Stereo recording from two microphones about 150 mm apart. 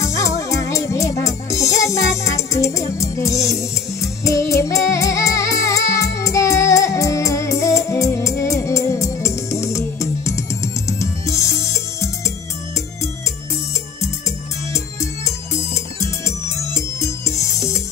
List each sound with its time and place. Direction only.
0.0 s music: 20° left (ahead or behind)
14.7 s music: 20° left (ahead or behind)